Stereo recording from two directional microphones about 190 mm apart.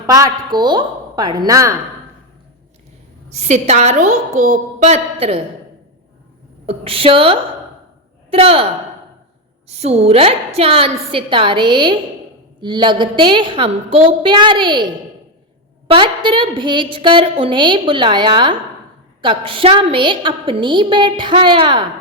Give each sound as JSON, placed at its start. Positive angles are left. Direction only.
{"t": 0.1, "sound": "a woman's voice", "side_deg": -20}
{"t": 3.2, "sound": "a woman's voice", "side_deg": -35}
{"t": 6.7, "sound": "a woman's voice", "side_deg": -30}
{"t": 9.6, "sound": "a woman's voice", "side_deg": -35}
{"t": 15.9, "sound": "a woman's voice", "side_deg": -25}